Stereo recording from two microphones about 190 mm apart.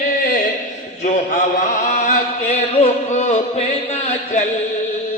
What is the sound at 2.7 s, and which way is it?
Music, 30° left (ahead or behind).